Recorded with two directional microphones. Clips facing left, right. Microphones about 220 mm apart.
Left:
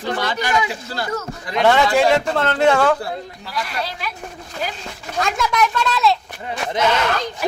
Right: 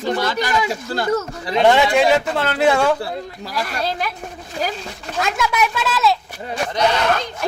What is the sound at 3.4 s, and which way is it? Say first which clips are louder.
Speech: right 3 dB; 45° right (ahead or behind).